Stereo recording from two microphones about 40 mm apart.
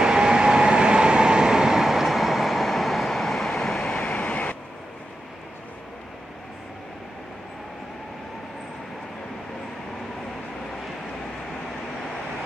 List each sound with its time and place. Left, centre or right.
0.0 s vehicle: centre
3.9 s vehicle: left